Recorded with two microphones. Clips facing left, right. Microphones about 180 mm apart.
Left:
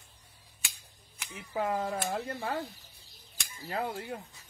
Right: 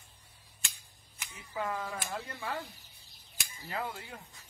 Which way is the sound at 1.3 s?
55° left (ahead or behind).